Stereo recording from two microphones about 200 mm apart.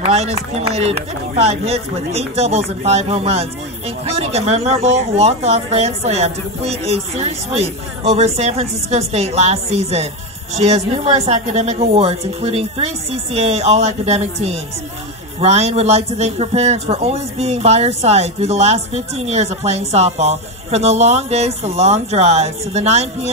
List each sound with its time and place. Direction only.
0.0 s a man's voice: 35° right (ahead or behind)